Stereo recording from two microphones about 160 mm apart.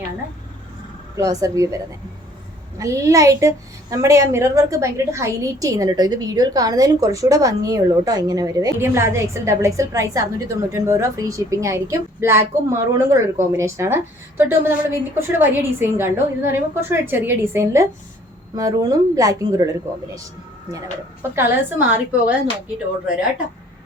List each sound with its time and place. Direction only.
1.1 s a woman's voice: 20° right (ahead or behind)
2.7 s a woman's voice: 20° right (ahead or behind)
21.3 s a woman's voice: 10° right (ahead or behind)